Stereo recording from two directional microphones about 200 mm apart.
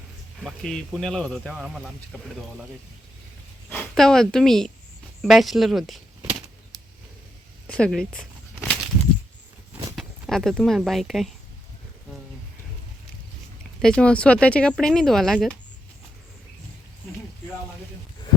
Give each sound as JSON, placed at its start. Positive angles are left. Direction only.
{"t": 0.3, "sound": "speech", "side_deg": 0}
{"t": 3.7, "sound": "a woman's voice", "side_deg": 5}
{"t": 7.7, "sound": "a sound", "side_deg": 5}
{"t": 9.9, "sound": "a sound", "side_deg": 0}
{"t": 10.5, "sound": "speech", "side_deg": 0}
{"t": 13.8, "sound": "speech", "side_deg": 5}